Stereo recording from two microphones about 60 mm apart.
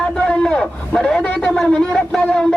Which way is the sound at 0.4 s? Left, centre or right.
Centre.